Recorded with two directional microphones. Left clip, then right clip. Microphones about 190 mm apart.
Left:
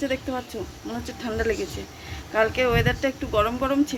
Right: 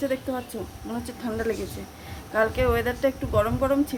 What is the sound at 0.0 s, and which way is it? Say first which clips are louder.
A woman's voice: even; 15° right (ahead or behind).